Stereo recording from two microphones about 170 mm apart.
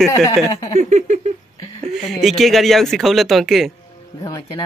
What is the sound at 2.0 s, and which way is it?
Speech, centre (ahead or behind).